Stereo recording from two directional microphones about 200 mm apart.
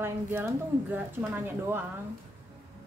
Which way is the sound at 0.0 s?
10° right (ahead or behind).